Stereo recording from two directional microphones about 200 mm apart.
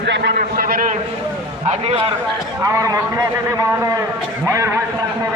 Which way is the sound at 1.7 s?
30° right (ahead or behind).